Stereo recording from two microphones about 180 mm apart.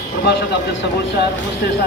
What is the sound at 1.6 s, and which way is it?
Speech, 60° left (ahead or behind).